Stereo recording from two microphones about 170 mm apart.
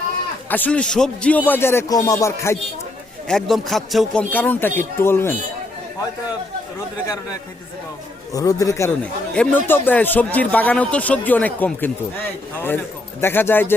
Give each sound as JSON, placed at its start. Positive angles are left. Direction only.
{"t": 0.5, "sound": "speech", "side_deg": 10}
{"t": 3.2, "sound": "speech", "side_deg": 0}
{"t": 8.3, "sound": "a man's voice", "side_deg": 20}
{"t": 9.3, "sound": "speech", "side_deg": 10}